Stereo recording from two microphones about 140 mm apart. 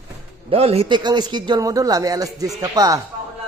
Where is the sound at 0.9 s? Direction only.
30° right (ahead or behind).